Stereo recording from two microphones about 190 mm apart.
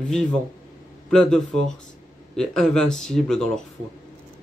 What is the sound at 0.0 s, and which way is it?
Speech, 5° left (ahead or behind).